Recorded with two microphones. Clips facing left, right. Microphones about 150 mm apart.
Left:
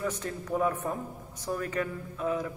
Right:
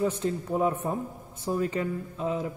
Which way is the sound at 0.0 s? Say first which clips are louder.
Right 6 dB; 25° right (ahead or behind).